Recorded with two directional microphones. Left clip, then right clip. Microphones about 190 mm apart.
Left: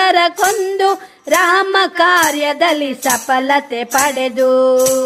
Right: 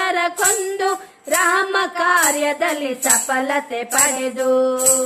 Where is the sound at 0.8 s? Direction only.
30° left (ahead or behind).